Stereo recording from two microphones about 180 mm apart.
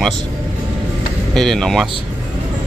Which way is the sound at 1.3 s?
Centre (ahead or behind).